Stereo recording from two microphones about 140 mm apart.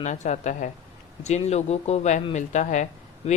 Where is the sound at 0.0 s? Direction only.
55° left (ahead or behind).